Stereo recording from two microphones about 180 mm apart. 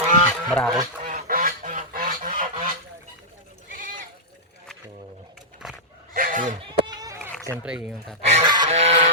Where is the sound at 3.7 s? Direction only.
50° right (ahead or behind).